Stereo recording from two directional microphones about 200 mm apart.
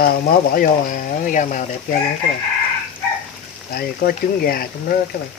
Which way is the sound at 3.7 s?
50° left (ahead or behind).